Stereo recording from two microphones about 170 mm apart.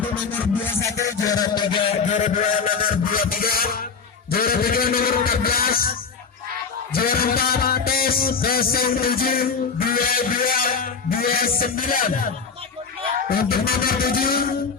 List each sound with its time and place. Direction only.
0.0 s music: 10° left (ahead or behind); by 2.0 s 30° left (ahead or behind)
2.0 s music: 45° left (ahead or behind); by 3.8 s 60° left (ahead or behind)
4.3 s a man's voice: 60° left (ahead or behind)
6.9 s a sound: 60° left (ahead or behind)
13.3 s music: 60° left (ahead or behind)